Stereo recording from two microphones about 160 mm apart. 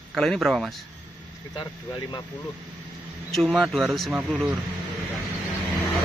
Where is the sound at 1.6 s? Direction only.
30° left (ahead or behind).